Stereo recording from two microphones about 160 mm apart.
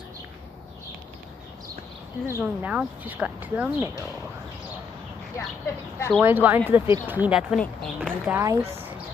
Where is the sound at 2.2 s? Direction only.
15° right (ahead or behind).